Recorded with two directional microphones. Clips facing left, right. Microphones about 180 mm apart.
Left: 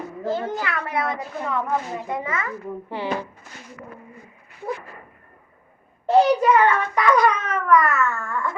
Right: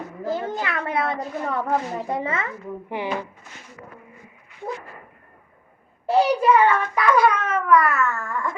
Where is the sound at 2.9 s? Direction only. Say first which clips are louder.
Even; 15° right (ahead or behind).